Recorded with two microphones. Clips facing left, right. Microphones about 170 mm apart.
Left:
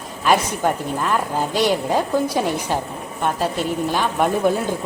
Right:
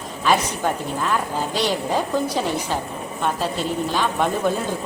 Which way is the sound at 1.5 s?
15° left (ahead or behind).